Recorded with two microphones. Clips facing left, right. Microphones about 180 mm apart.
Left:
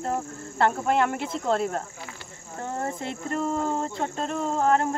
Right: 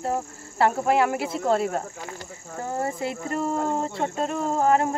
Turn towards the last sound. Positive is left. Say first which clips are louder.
# right 2 dB
turn(degrees=-5)  # may be behind; listen again after turning